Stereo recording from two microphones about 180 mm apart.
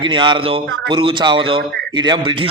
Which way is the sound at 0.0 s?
25° right (ahead or behind).